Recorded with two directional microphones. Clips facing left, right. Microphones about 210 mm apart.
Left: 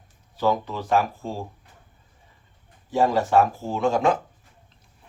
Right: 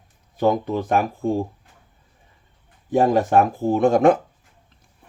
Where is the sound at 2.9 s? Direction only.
55° right (ahead or behind).